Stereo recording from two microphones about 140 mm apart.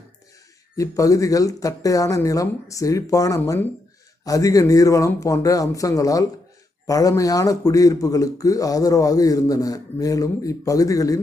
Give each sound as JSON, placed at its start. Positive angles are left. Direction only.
{"t": 0.8, "sound": "speech", "side_deg": 25}